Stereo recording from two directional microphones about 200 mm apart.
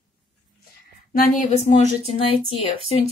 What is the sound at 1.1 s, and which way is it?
Speech, 45° left (ahead or behind).